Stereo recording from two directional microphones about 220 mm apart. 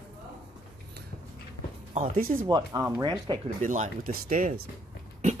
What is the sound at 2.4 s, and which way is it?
Speech, 20° right (ahead or behind).